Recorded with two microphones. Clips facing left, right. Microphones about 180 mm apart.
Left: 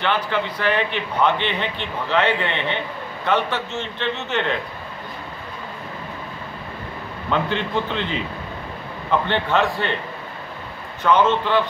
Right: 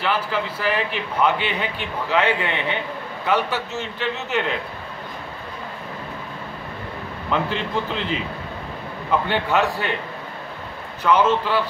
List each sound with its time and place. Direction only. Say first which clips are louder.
0.0 s a man's voice: left 1 dB; 5° right (ahead or behind)
7.2 s a man's voice: left 1 dB; centre (ahead or behind)
9.3 s a man's voice: even; 10° right (ahead or behind)
11.1 s a man's voice: left 1 dB; 5° right (ahead or behind)